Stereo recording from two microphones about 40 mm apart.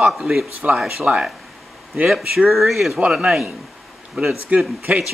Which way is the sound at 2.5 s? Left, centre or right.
Centre.